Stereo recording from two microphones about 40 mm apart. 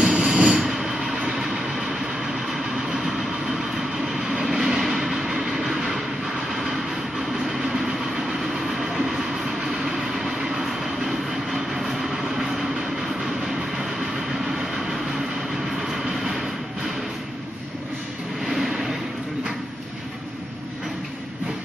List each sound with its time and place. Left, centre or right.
0.0 s train: centre
2.9 s vehicle: centre
4.1 s train: centre
7.4 s train: centre
14.4 s train: centre
18.4 s train: centre